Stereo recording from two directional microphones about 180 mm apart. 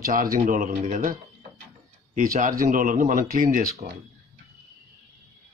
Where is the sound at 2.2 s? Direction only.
45° right (ahead or behind).